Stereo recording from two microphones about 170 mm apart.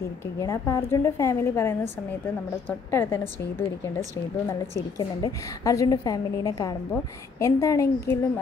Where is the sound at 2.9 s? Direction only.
15° left (ahead or behind).